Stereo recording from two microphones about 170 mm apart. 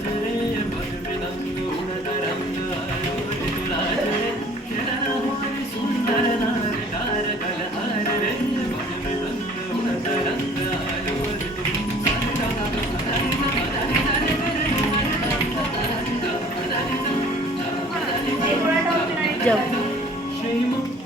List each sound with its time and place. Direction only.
19.5 s music: 10° left (ahead or behind)